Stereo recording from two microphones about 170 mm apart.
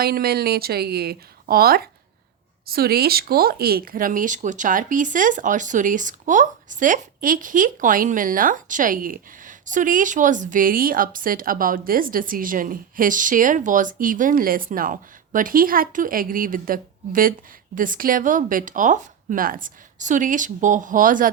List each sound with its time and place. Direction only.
0.0 s speech: 65° right (ahead or behind)